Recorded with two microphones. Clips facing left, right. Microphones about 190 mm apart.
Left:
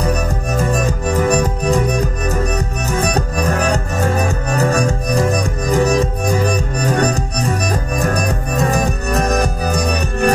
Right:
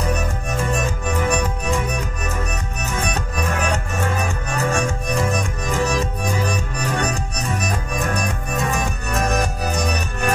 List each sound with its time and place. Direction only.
1.0 s music: 40° left (ahead or behind)